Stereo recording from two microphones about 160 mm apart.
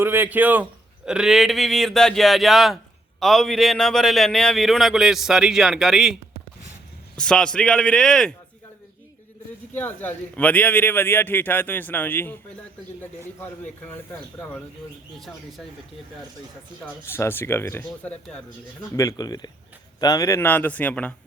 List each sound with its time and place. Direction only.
0.0 s a man's voice: 15° right (ahead or behind)
7.2 s a man's voice: 5° left (ahead or behind)
9.7 s a man's voice: 10° left (ahead or behind)
14.1 s a man's voice: 10° left (ahead or behind)
16.8 s a man's voice: 15° left (ahead or behind)
18.9 s a man's voice: 20° left (ahead or behind)